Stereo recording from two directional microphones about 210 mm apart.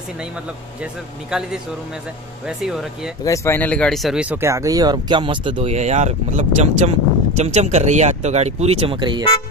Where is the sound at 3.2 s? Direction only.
15° left (ahead or behind); by 9.2 s 25° right (ahead or behind).